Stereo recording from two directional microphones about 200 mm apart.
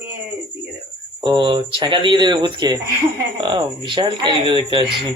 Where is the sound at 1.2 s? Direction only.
25° right (ahead or behind).